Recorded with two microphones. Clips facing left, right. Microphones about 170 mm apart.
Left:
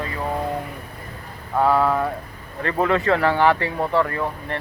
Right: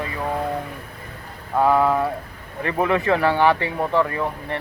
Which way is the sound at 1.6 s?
15° right (ahead or behind).